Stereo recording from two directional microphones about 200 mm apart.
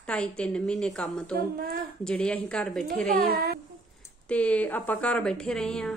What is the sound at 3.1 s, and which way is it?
Speech, 50° right (ahead or behind).